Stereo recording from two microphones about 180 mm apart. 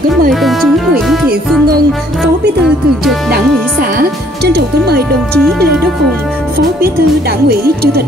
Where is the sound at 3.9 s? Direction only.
65° right (ahead or behind).